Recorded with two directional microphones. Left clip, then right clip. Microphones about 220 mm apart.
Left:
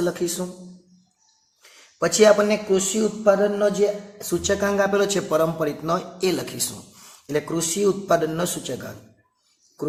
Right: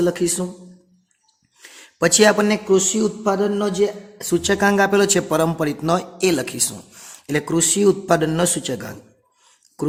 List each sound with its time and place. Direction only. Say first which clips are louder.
0.0 s speech: right 5 dB; 50° right (ahead or behind)
2.0 s speech: right 1 dB; 50° right (ahead or behind)